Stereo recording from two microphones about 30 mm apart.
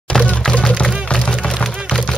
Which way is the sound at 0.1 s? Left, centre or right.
Centre.